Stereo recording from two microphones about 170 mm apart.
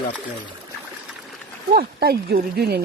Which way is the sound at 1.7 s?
65° right (ahead or behind).